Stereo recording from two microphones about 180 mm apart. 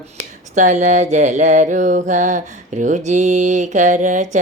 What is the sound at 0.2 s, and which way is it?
Mantra, 40° right (ahead or behind).